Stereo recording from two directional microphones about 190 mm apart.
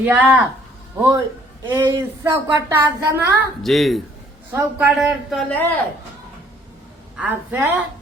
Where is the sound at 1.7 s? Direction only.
15° right (ahead or behind).